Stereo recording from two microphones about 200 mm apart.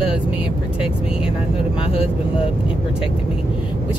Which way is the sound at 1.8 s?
30° left (ahead or behind).